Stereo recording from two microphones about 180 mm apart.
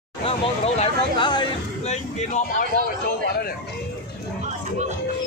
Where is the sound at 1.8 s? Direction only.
40° left (ahead or behind).